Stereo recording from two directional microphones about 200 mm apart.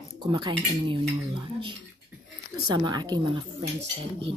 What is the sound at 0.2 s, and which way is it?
Dishes, 20° right (ahead or behind).